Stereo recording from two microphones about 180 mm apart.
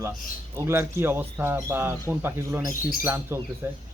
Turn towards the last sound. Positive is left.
turn(degrees=-15)  # may be behind; listen again after turning